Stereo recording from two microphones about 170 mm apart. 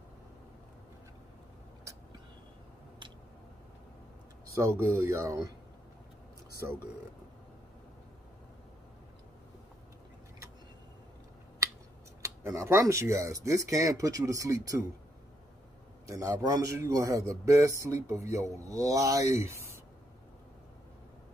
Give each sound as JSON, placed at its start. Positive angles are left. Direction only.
{"t": 4.6, "sound": "speech", "side_deg": -15}
{"t": 6.6, "sound": "speech", "side_deg": -20}
{"t": 12.2, "sound": "speech", "side_deg": -15}
{"t": 16.1, "sound": "speech", "side_deg": -20}